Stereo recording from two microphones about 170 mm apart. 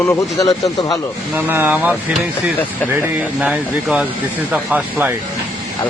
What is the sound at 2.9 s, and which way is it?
Speech, 5° right (ahead or behind).